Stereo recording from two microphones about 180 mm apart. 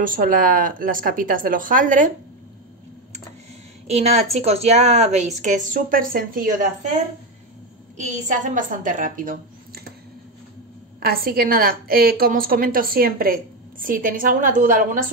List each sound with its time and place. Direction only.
0.0 s a woman's voice: 50° right (ahead or behind)
3.8 s a woman's voice: 35° right (ahead or behind)
8.0 s a woman's voice: 40° right (ahead or behind)
11.0 s a woman's voice: 55° right (ahead or behind)